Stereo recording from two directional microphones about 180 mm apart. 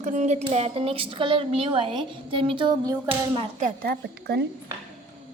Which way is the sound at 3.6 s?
60° right (ahead or behind).